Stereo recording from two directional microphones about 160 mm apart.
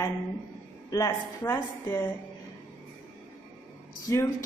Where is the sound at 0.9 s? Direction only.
20° left (ahead or behind).